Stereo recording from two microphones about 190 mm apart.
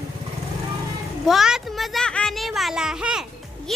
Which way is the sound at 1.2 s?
Centre (ahead or behind).